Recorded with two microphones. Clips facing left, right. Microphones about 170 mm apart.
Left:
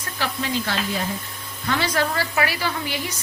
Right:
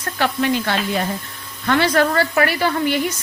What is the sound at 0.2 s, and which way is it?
A woman's voice, 60° right (ahead or behind).